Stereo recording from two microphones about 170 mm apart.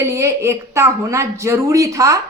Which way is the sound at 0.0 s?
15° right (ahead or behind).